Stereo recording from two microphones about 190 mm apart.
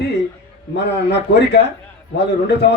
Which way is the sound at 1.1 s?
65° left (ahead or behind).